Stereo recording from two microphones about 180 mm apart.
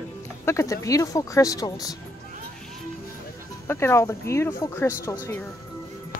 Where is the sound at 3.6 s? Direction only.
15° left (ahead or behind).